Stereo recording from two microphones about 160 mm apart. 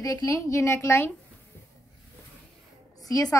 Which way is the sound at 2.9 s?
20° left (ahead or behind).